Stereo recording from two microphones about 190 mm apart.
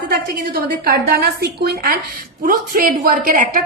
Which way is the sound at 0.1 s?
55° right (ahead or behind).